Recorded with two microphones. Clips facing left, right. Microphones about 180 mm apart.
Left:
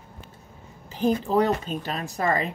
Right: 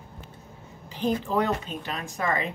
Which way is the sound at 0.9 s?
40° left (ahead or behind).